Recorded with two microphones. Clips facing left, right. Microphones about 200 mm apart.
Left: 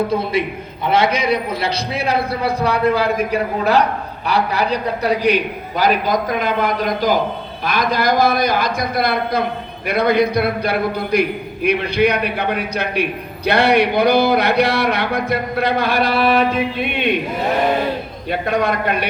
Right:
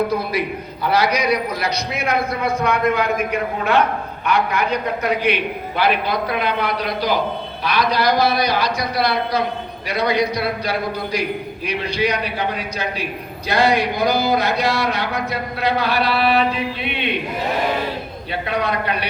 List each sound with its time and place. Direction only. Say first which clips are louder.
0.9 s a man's voice: left 2 dB; 25° left (ahead or behind); by 17.2 s 50° left (ahead or behind)
18.3 s a man's voice: left 4 dB; 45° left (ahead or behind)